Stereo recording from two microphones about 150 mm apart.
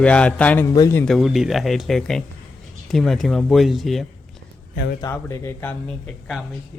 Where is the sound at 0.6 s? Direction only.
25° left (ahead or behind).